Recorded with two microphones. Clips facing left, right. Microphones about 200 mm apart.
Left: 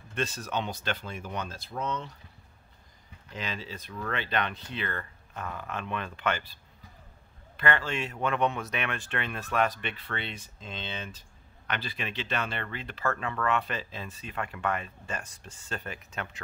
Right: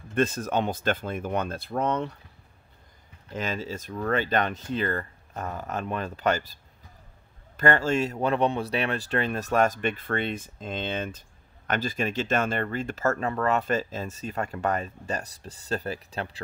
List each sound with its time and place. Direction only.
0.1 s speech: 50° right (ahead or behind)
3.3 s speech: 45° right (ahead or behind)